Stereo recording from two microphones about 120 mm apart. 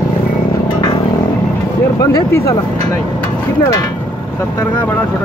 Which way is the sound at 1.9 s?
25° left (ahead or behind).